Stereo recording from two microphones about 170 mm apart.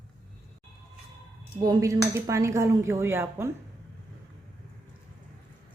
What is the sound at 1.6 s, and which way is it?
Speech, 20° right (ahead or behind).